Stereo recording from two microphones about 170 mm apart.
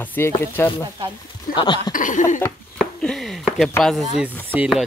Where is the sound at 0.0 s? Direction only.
10° left (ahead or behind).